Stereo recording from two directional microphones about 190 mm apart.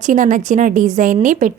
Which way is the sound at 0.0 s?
40° right (ahead or behind).